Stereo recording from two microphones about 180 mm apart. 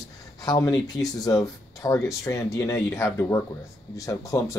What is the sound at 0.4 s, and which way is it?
Speech, 20° left (ahead or behind).